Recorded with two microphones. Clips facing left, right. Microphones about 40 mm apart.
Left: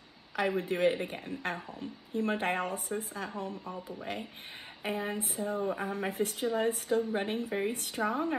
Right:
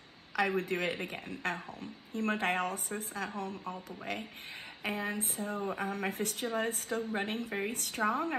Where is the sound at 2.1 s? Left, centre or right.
Right.